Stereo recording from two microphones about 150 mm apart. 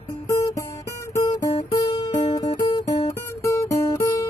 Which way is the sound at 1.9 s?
45° left (ahead or behind).